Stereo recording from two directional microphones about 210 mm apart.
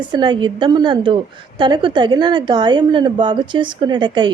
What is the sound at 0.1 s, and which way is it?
A woman's voice, 20° right (ahead or behind).